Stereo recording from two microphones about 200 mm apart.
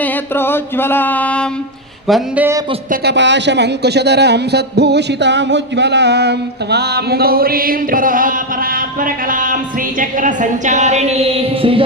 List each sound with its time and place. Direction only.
0.0 s mantra: 10° left (ahead or behind)
2.0 s speech: 5° right (ahead or behind)
2.9 s a woman's voice: 55° right (ahead or behind); by 11.8 s 30° right (ahead or behind)